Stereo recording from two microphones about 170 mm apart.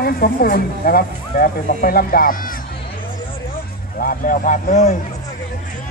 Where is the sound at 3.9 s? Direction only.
55° left (ahead or behind).